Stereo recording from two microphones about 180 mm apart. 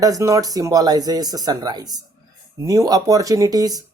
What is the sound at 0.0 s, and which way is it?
Speech, 20° right (ahead or behind).